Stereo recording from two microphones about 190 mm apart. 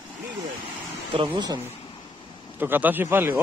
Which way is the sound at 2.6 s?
10° right (ahead or behind).